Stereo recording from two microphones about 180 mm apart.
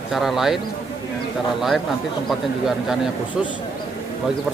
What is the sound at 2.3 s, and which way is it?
Speech, centre (ahead or behind).